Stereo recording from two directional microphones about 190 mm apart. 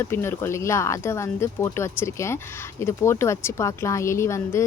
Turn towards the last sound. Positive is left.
turn(degrees=15)  # may be behind; listen again after turning